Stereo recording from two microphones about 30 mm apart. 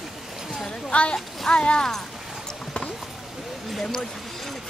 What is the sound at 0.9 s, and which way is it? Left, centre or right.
Speech, left.